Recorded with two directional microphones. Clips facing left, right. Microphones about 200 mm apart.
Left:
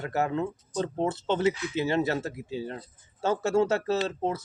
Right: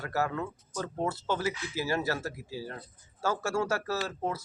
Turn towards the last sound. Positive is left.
turn(degrees=20)  # may be behind; listen again after turning